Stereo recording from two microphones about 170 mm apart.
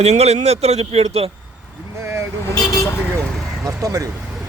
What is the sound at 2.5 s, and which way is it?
Vehicle, 20° left (ahead or behind).